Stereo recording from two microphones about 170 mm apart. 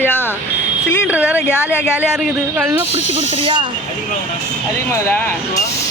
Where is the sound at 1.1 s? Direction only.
10° right (ahead or behind).